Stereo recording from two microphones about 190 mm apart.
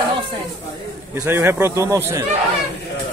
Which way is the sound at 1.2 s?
10° right (ahead or behind).